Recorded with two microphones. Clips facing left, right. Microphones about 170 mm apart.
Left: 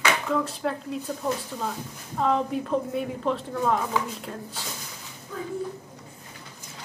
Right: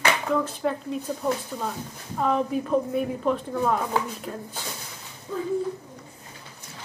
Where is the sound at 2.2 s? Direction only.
5° right (ahead or behind).